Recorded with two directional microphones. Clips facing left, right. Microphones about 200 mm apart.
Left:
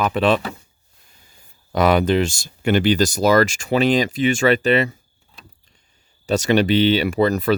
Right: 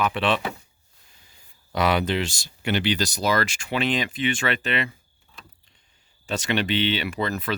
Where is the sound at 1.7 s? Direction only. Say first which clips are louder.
Left 6 dB; 45° left (ahead or behind).